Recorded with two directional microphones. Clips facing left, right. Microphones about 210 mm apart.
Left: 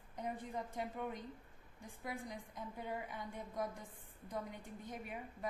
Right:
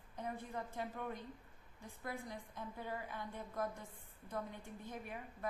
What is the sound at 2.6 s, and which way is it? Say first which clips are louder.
A woman's voice: left 1 dB; 15° left (ahead or behind).